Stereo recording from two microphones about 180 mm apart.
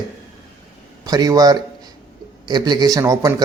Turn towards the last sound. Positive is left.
turn(degrees=-20)  # may be behind; listen again after turning